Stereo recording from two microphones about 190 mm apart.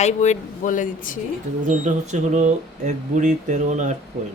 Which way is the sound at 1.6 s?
40° right (ahead or behind).